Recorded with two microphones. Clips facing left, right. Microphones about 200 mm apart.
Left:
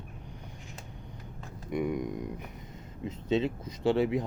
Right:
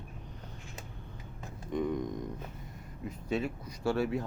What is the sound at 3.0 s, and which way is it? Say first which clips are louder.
Speech: left 5 dB; 20° left (ahead or behind).